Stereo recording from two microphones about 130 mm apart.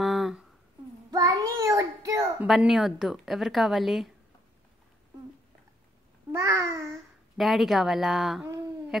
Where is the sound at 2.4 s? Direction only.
Centre (ahead or behind).